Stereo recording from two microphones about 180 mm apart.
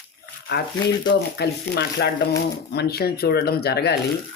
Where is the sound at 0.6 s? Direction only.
60° left (ahead or behind).